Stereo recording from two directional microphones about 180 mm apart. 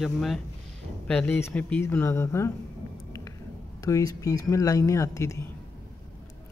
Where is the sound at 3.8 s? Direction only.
20° left (ahead or behind).